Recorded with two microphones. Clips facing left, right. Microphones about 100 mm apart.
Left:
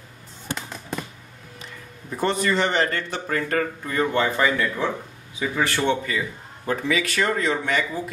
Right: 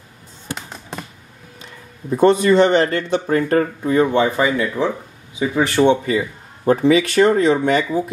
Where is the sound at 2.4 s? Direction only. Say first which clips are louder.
Right 8 dB; 25° right (ahead or behind).